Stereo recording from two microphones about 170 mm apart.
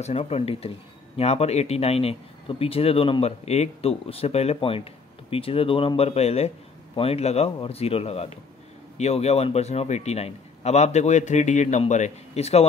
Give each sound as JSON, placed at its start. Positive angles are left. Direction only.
{"t": 0.0, "sound": "speech", "side_deg": 35}